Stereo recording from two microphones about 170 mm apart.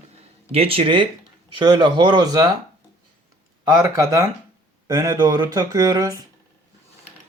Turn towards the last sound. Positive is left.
turn(degrees=-20)  # may be behind; listen again after turning